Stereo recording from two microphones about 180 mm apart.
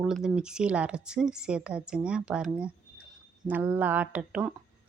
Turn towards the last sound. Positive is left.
turn(degrees=-5)  # may be behind; listen again after turning